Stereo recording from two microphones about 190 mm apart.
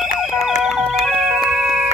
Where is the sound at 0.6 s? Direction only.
Centre (ahead or behind).